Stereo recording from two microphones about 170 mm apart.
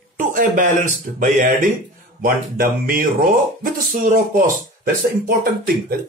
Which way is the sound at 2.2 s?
60° right (ahead or behind).